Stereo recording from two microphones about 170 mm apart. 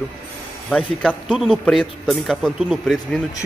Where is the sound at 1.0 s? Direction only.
Centre (ahead or behind).